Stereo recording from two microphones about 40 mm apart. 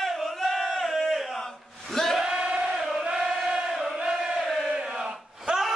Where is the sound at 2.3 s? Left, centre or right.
Right.